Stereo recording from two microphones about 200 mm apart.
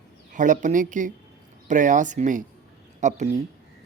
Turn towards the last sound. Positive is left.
turn(degrees=-35)  # may be behind; listen again after turning